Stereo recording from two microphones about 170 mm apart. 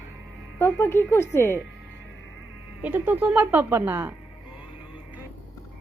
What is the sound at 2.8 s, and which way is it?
A woman's voice, 10° right (ahead or behind).